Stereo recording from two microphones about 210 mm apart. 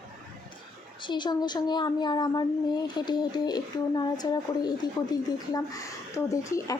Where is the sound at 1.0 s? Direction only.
20° left (ahead or behind).